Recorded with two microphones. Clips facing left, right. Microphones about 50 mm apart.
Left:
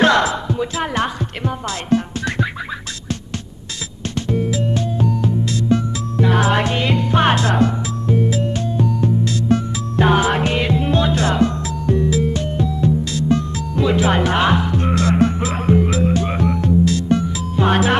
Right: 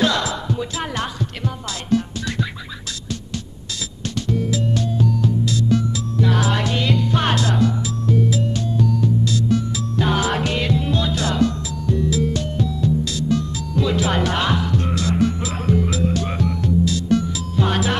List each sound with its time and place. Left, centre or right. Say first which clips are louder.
0.0 s a sound: left 6 dB; left
0.3 s music: left 3 dB; left
4.1 s music: left 2 dB; left
9.2 s music: left 2 dB; left
15.0 s music: left 5 dB; left
17.1 s music: left 1 dB; left